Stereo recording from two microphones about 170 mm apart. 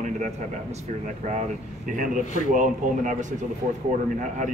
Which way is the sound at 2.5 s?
45° right (ahead or behind).